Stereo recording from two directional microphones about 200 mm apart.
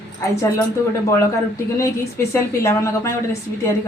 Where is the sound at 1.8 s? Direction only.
15° left (ahead or behind).